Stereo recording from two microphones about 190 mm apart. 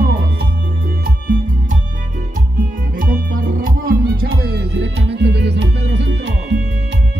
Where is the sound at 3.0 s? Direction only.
45° right (ahead or behind); by 6.6 s 65° right (ahead or behind).